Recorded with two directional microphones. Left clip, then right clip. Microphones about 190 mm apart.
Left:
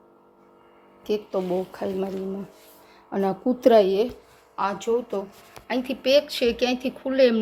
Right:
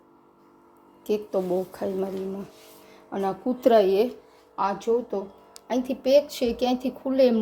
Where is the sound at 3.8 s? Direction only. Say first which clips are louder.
Even; centre (ahead or behind).